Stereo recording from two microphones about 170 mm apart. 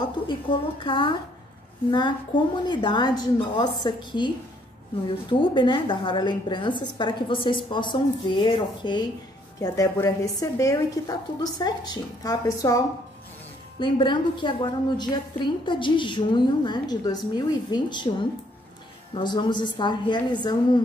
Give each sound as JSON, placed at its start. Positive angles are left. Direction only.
{"t": 0.3, "sound": "a woman's voice", "side_deg": 30}
{"t": 5.3, "sound": "a woman's voice", "side_deg": 30}
{"t": 19.1, "sound": "a woman's voice", "side_deg": 25}